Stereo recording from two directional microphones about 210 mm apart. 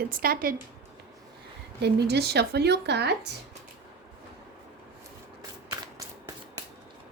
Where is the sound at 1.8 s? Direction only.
50° right (ahead or behind).